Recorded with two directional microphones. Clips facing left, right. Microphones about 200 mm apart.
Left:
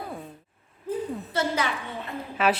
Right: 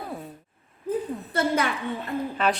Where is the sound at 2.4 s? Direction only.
5° left (ahead or behind).